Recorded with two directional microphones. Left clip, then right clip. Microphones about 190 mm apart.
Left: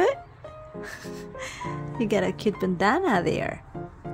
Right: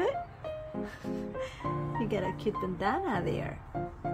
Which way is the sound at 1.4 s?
50° left (ahead or behind).